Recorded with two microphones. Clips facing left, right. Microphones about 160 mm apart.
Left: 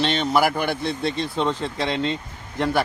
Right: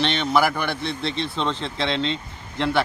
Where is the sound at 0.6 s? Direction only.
50° left (ahead or behind).